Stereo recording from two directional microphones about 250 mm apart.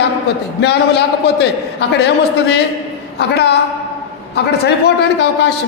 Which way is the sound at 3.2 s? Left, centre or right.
Left.